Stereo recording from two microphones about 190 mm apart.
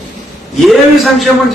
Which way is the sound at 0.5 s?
Centre (ahead or behind).